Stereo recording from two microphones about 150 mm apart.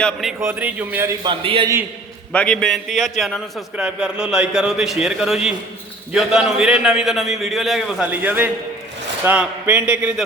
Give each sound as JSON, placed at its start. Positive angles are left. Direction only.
{"t": 0.0, "sound": "a man's voice", "side_deg": 0}
{"t": 0.3, "sound": "a man's voice", "side_deg": -15}
{"t": 1.2, "sound": "a man's voice", "side_deg": -35}
{"t": 2.3, "sound": "a man's voice", "side_deg": 5}